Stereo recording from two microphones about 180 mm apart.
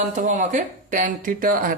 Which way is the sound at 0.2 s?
45° right (ahead or behind).